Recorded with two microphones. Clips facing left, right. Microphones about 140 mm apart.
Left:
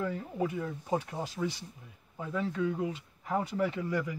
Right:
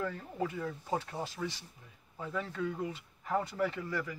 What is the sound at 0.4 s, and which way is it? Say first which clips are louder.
Speech: left 2 dB; 20° left (ahead or behind).